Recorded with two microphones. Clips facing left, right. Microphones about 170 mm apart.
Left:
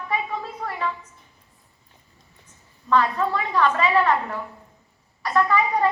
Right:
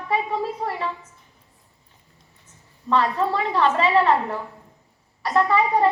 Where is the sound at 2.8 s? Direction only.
30° right (ahead or behind).